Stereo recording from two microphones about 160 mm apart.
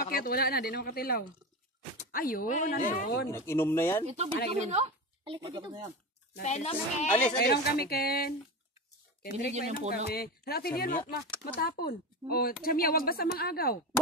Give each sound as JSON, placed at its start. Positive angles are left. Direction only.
{"t": 0.0, "sound": "speech", "side_deg": 60}
{"t": 3.3, "sound": "speech", "side_deg": 20}
{"t": 4.0, "sound": "speech", "side_deg": -40}
{"t": 6.4, "sound": "a child's voice", "side_deg": 45}
{"t": 7.1, "sound": "speech", "side_deg": 10}
{"t": 7.4, "sound": "speech", "side_deg": 80}
{"t": 9.3, "sound": "speech", "side_deg": -45}
{"t": 9.9, "sound": "speech", "side_deg": 80}